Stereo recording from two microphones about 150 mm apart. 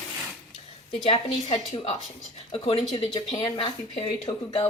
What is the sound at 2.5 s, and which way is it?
Speech, 40° left (ahead or behind).